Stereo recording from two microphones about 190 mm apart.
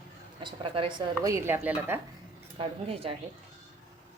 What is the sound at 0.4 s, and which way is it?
A woman's voice, 25° right (ahead or behind).